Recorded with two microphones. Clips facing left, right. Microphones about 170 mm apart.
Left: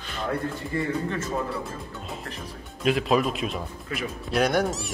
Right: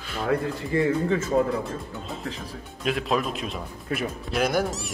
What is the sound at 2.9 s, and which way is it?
Speech, centre (ahead or behind).